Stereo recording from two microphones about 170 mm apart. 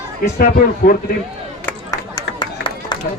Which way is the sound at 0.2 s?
60° left (ahead or behind).